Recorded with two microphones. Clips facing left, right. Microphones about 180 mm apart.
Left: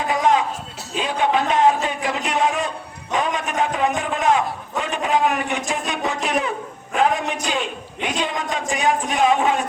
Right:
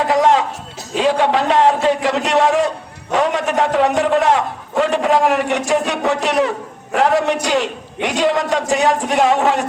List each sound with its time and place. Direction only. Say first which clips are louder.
0.0 s music: right 5 dB; 75° right (ahead or behind)
0.9 s a man's voice: right 5 dB; 80° right